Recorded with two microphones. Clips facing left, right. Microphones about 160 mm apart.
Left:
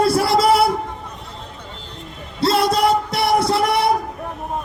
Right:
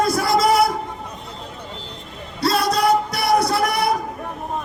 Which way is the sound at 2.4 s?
25° left (ahead or behind).